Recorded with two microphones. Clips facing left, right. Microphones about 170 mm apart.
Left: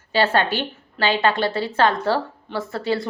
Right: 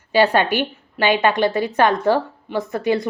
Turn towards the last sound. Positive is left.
turn(degrees=-20)  # may be behind; listen again after turning